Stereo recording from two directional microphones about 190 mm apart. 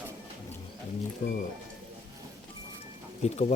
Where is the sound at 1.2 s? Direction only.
45° left (ahead or behind).